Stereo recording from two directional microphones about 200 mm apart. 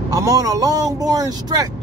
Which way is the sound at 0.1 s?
15° right (ahead or behind).